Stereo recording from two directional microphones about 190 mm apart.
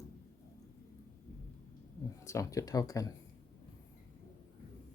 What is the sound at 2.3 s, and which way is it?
Speech, 15° left (ahead or behind).